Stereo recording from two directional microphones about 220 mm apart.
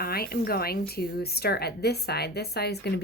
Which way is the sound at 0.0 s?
45° left (ahead or behind).